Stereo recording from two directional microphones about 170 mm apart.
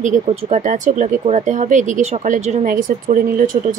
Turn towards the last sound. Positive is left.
turn(degrees=-50)  # may be behind; listen again after turning